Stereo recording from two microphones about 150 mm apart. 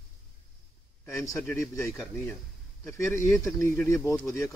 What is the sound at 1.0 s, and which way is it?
Speech, 20° left (ahead or behind).